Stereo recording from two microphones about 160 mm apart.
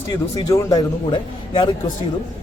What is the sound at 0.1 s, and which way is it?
Speech, 25° left (ahead or behind).